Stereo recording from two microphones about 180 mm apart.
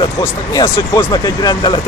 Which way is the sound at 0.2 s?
20° left (ahead or behind).